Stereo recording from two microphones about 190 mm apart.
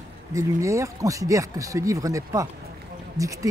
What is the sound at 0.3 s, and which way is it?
Speech, 15° right (ahead or behind).